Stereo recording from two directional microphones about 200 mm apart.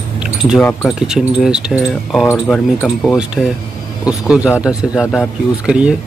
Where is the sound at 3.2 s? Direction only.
5° right (ahead or behind).